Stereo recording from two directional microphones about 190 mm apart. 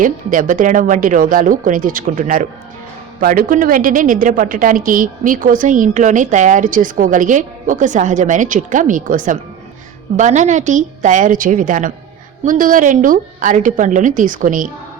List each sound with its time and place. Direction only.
0.0 s a woman's voice: 45° right (ahead or behind)